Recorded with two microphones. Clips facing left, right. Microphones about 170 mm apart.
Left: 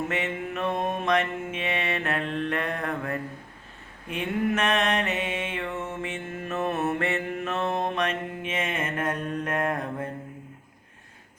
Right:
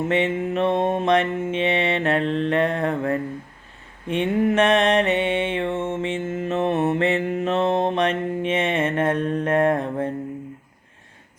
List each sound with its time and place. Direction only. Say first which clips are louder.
0.1 s mantra: right 8 dB; 30° right (ahead or behind)